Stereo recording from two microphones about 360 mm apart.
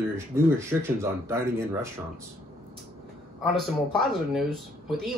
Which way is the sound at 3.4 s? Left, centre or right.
Centre.